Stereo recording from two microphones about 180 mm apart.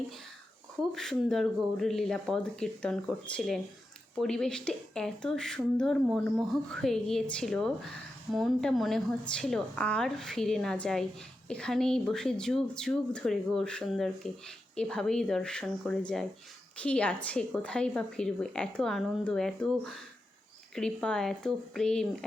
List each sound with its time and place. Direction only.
0.8 s speech: centre (ahead or behind)